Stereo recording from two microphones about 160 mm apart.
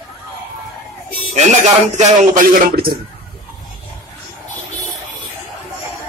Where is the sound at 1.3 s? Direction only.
45° right (ahead or behind); by 2.9 s 65° right (ahead or behind).